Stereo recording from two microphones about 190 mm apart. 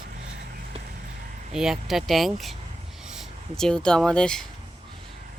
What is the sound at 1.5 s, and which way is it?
Speech, centre (ahead or behind).